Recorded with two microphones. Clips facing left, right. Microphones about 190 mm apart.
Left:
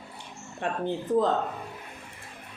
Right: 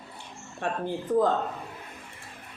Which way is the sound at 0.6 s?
20° left (ahead or behind).